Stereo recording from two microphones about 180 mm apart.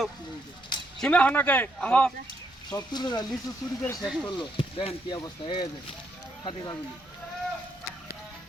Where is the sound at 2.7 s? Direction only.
25° left (ahead or behind).